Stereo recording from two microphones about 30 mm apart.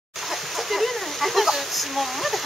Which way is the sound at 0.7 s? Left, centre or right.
Centre.